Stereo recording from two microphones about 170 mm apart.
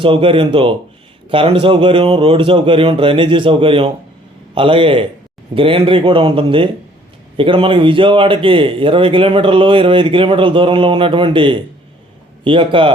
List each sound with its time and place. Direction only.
0.0 s a man's voice: 30° right (ahead or behind)